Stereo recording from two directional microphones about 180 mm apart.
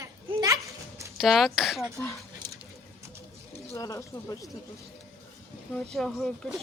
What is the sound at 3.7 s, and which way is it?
Speech, 20° left (ahead or behind).